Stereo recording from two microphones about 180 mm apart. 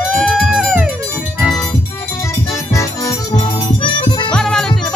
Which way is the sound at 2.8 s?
20° left (ahead or behind).